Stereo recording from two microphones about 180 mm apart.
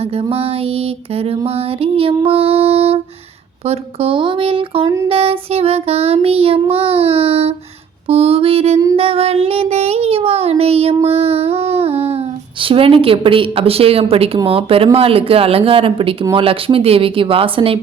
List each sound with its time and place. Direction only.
0.2 s child singing: 35° right (ahead or behind)